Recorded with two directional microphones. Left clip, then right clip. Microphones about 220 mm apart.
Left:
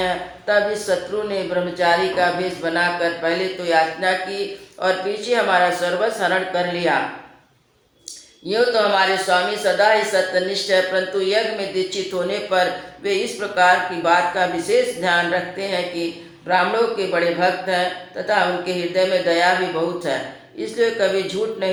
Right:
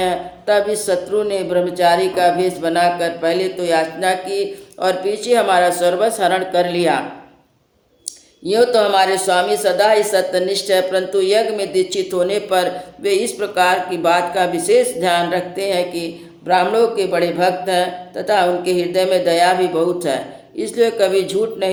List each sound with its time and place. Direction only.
0.0 s speech: 50° right (ahead or behind)
8.4 s speech: 55° right (ahead or behind)
20.6 s speech: 50° right (ahead or behind)